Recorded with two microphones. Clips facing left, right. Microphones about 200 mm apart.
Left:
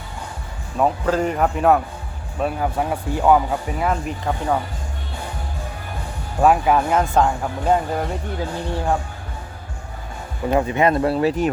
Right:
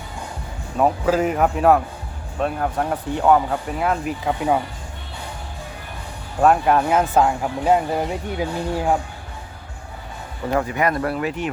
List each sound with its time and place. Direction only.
0.8 s speech: 5° right (ahead or behind)
6.4 s speech: centre (ahead or behind)
10.5 s speech: 25° left (ahead or behind)